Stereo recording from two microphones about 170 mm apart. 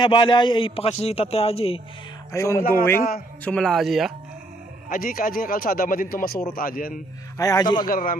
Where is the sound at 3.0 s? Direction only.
60° left (ahead or behind).